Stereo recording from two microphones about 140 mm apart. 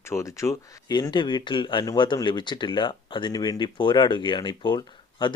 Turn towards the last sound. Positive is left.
turn(degrees=35)  # may be behind; listen again after turning